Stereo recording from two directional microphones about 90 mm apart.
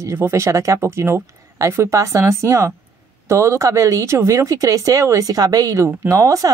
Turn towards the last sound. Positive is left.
turn(degrees=-35)  # may be behind; listen again after turning